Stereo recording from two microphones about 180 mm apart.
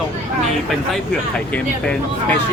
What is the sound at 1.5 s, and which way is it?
Speech, 10° left (ahead or behind).